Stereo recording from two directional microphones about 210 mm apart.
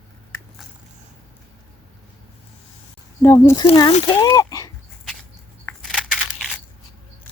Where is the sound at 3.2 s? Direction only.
15° left (ahead or behind).